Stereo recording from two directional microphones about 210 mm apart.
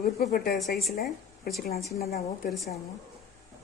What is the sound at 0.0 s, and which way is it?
Speech, 45° left (ahead or behind).